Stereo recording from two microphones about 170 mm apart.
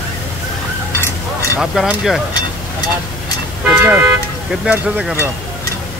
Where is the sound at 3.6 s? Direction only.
10° right (ahead or behind).